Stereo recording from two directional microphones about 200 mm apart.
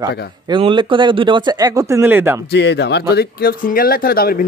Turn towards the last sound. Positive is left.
turn(degrees=50)  # may be behind; listen again after turning